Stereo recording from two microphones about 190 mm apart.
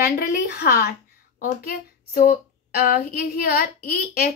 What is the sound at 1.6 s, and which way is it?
Child singing, 50° left (ahead or behind).